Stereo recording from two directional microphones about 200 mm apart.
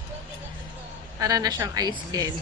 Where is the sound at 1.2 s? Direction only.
20° right (ahead or behind).